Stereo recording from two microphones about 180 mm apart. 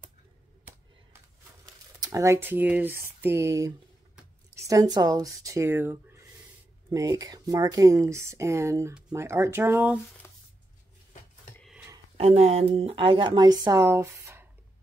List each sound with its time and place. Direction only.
2.0 s speech: 20° right (ahead or behind)
12.2 s speech: 35° right (ahead or behind); by 14.5 s 15° right (ahead or behind)